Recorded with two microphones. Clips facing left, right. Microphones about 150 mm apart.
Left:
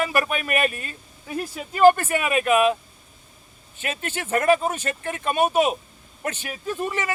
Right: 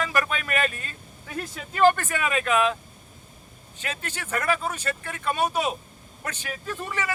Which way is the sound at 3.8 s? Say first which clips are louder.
Left 5 dB; 15° left (ahead or behind).